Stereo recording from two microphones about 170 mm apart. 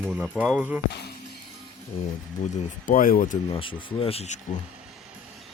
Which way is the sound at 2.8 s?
50° left (ahead or behind).